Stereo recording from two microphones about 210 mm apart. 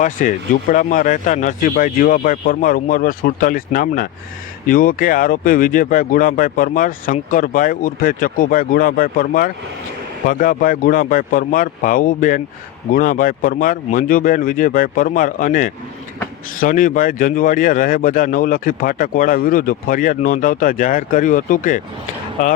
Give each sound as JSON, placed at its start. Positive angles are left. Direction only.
{"t": 0.0, "sound": "speech", "side_deg": 40}